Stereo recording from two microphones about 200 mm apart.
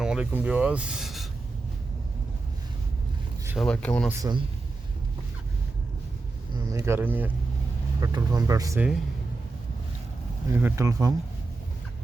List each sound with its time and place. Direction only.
0.0 s speech: 5° right (ahead or behind)
3.4 s a sound: 5° right (ahead or behind)
3.7 s speech: 5° left (ahead or behind)
4.2 s a man's voice: 20° right (ahead or behind)
6.5 s speech: 15° right (ahead or behind)
8.0 s speech: 20° right (ahead or behind)
10.5 s speech: 10° right (ahead or behind)